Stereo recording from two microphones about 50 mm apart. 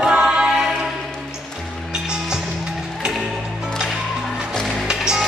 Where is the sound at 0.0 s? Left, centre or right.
Centre.